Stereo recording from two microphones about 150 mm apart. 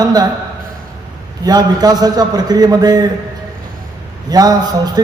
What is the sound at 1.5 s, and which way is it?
A man's voice, 25° right (ahead or behind).